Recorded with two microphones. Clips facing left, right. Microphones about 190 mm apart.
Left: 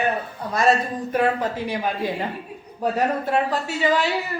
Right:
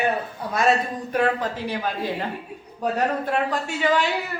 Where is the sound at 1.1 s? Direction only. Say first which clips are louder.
Left 1 dB; 10° left (ahead or behind).